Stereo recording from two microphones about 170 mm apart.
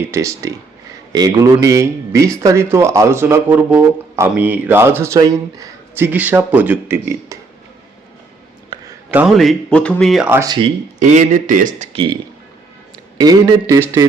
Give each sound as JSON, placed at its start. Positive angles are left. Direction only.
{"t": 0.0, "sound": "a man's voice", "side_deg": -15}
{"t": 8.7, "sound": "a sound", "side_deg": -25}
{"t": 9.0, "sound": "speech", "side_deg": -5}
{"t": 10.4, "sound": "a man's voice", "side_deg": -25}
{"t": 11.0, "sound": "a man's voice", "side_deg": -45}
{"t": 13.1, "sound": "a man's voice", "side_deg": -20}